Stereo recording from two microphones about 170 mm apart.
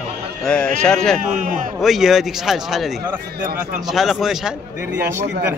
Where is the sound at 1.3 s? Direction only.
50° right (ahead or behind).